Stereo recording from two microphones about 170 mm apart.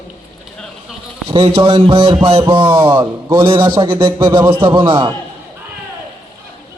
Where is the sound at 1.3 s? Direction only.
35° right (ahead or behind).